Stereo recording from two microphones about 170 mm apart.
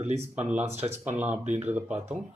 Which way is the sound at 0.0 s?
40° right (ahead or behind).